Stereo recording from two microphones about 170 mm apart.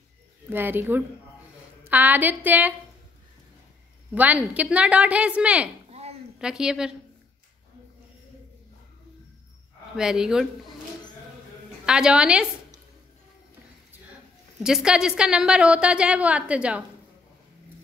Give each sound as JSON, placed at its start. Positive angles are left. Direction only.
{"t": 0.5, "sound": "a woman's voice", "side_deg": -10}
{"t": 4.1, "sound": "a woman's voice", "side_deg": -10}
{"t": 5.9, "sound": "a sound", "side_deg": -40}
{"t": 6.3, "sound": "a woman's voice", "side_deg": -5}
{"t": 9.9, "sound": "a woman's voice", "side_deg": -5}
{"t": 11.8, "sound": "a woman's voice", "side_deg": -5}
{"t": 14.6, "sound": "a woman's voice", "side_deg": -5}